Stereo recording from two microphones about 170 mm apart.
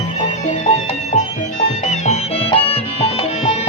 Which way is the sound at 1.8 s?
40° left (ahead or behind).